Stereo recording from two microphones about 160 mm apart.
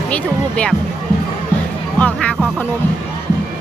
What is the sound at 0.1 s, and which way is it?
Speech, 5° left (ahead or behind).